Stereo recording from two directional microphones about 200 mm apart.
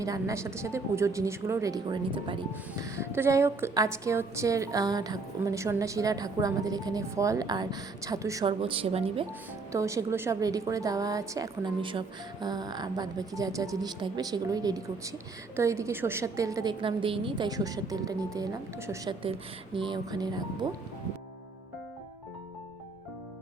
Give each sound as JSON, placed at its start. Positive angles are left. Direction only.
{"t": 0.0, "sound": "a woman's voice", "side_deg": -15}
{"t": 2.8, "sound": "a woman's voice", "side_deg": -15}
{"t": 9.7, "sound": "a woman's voice", "side_deg": -15}